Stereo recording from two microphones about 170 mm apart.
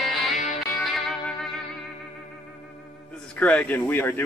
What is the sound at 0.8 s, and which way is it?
Music, centre (ahead or behind).